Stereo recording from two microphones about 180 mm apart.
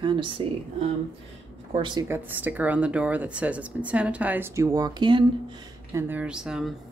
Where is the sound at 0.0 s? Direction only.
25° right (ahead or behind).